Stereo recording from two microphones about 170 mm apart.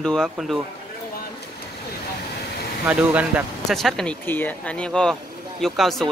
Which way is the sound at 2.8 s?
10° right (ahead or behind).